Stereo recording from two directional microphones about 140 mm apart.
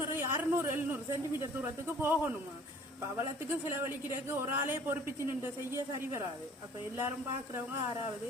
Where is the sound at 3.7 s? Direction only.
15° right (ahead or behind).